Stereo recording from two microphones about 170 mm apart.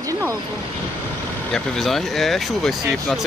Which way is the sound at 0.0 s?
20° right (ahead or behind).